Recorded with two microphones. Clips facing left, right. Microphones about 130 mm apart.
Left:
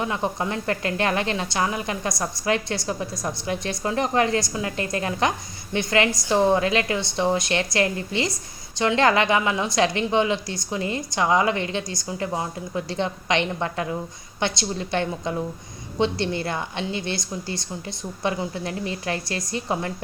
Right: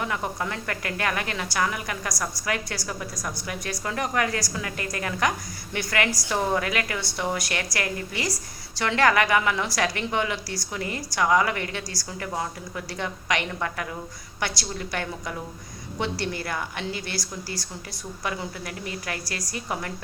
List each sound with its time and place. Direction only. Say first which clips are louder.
0.0 s speech: left 3 dB; 25° left (ahead or behind)